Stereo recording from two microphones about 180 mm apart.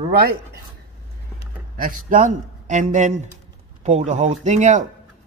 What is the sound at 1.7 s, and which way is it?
Speech, 50° right (ahead or behind).